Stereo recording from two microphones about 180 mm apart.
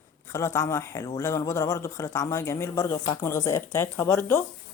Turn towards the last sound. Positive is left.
turn(degrees=15)  # may be behind; listen again after turning